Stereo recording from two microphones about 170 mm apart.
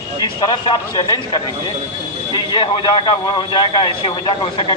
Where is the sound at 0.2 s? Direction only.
30° left (ahead or behind).